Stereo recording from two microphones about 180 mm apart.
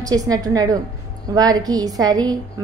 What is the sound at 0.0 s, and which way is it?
A woman's voice, 20° right (ahead or behind).